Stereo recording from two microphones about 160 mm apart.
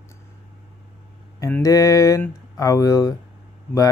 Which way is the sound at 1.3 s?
20° left (ahead or behind).